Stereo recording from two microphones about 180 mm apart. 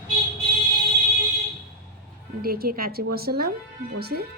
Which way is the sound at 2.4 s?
55° right (ahead or behind).